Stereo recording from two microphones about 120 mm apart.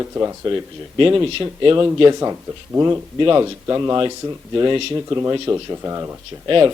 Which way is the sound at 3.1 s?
40° right (ahead or behind).